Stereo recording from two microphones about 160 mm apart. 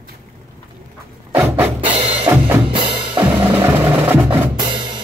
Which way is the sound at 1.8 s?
35° right (ahead or behind).